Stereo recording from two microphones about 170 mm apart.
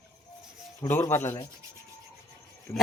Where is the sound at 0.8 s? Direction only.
15° left (ahead or behind).